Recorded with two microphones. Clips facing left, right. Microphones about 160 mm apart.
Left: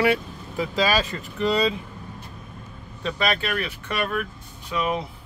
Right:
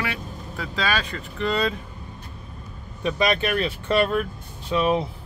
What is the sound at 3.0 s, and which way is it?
Speech, 20° right (ahead or behind).